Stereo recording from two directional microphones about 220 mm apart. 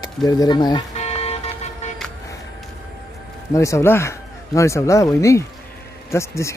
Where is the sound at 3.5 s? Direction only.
15° left (ahead or behind).